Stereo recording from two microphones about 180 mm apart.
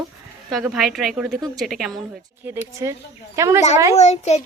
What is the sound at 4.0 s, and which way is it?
Speech, 40° left (ahead or behind).